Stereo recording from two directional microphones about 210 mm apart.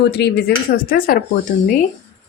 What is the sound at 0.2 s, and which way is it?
Speech, 50° left (ahead or behind).